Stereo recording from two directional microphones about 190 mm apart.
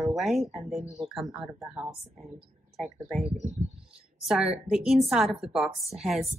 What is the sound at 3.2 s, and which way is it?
Speech, 40° right (ahead or behind).